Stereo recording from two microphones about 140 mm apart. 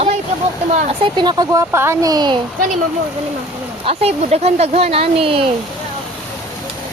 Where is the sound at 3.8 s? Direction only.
45° right (ahead or behind).